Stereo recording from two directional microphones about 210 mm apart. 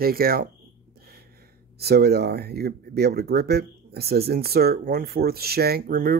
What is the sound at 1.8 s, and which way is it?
Speech, 50° right (ahead or behind).